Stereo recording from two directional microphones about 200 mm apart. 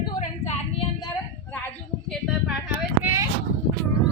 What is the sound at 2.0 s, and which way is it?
Speech, centre (ahead or behind).